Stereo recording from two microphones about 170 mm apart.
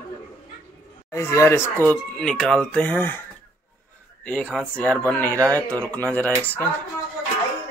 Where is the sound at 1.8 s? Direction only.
5° left (ahead or behind).